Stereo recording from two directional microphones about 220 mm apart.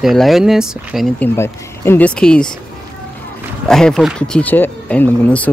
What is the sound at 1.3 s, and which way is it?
Speech, 10° left (ahead or behind).